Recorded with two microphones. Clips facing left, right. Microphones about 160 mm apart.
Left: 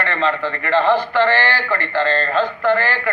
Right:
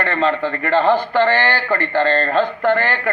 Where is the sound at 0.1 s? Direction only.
40° right (ahead or behind).